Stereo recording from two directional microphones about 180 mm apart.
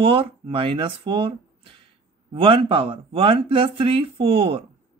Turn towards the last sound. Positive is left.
turn(degrees=-30)  # may be behind; listen again after turning